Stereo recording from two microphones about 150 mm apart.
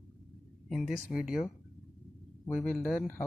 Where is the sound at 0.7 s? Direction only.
5° right (ahead or behind).